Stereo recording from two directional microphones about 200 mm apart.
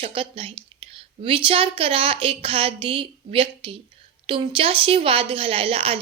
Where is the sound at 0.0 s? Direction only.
25° right (ahead or behind).